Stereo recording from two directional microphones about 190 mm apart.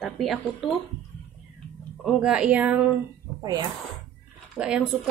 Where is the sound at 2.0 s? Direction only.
5° right (ahead or behind).